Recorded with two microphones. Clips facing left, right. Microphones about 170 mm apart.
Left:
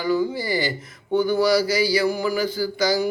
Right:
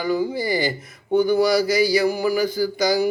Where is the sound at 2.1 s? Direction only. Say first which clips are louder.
Right 2 dB; 10° right (ahead or behind).